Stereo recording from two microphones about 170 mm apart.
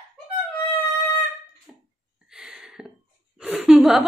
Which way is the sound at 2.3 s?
5° right (ahead or behind).